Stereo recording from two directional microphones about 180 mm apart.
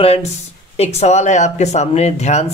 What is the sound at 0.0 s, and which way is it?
Speech, 35° left (ahead or behind).